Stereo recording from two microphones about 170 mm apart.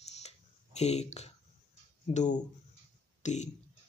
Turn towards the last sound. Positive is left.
turn(degrees=45)  # may be behind; listen again after turning